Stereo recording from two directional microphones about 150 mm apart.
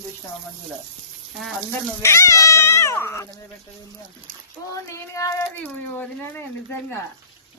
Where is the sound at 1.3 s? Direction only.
Centre (ahead or behind).